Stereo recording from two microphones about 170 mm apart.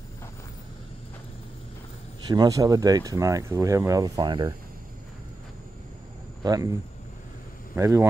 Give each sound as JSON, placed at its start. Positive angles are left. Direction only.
{"t": 2.2, "sound": "speech", "side_deg": -25}
{"t": 6.4, "sound": "speech", "side_deg": -20}